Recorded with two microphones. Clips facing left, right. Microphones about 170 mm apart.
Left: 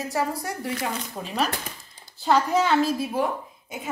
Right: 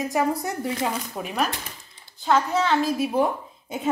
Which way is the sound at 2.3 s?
10° left (ahead or behind).